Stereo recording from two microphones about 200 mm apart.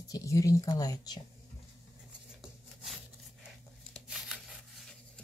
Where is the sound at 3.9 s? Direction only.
Centre (ahead or behind).